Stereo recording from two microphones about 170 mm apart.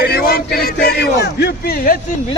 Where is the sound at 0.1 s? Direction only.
65° left (ahead or behind).